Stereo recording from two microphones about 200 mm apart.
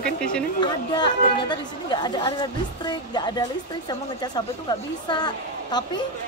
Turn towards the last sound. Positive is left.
turn(degrees=20)  # may be behind; listen again after turning